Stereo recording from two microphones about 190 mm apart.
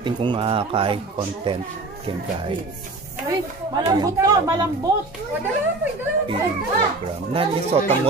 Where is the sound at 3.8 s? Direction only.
20° right (ahead or behind).